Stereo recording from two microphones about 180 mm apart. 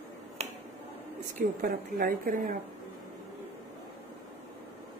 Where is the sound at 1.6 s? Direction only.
50° right (ahead or behind).